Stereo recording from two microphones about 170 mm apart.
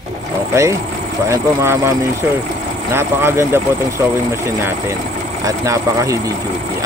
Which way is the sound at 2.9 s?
15° right (ahead or behind).